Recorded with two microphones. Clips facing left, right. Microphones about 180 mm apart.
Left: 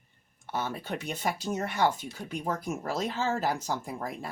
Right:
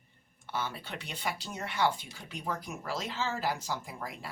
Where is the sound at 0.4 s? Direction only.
45° left (ahead or behind).